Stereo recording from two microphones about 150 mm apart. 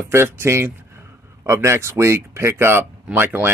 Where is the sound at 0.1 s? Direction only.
15° right (ahead or behind).